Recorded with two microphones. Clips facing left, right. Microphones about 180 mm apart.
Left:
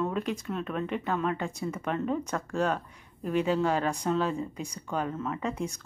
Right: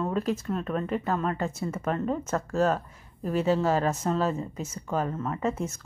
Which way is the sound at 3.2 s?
40° right (ahead or behind).